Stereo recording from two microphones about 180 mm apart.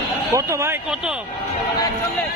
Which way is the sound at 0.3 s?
15° right (ahead or behind).